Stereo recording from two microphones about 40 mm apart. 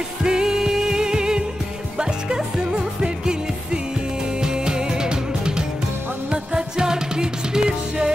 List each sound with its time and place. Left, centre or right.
0.2 s music: centre